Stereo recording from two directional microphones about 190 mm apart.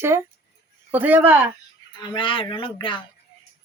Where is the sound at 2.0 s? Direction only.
25° left (ahead or behind).